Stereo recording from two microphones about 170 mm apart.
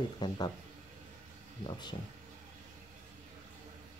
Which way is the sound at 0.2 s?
25° left (ahead or behind).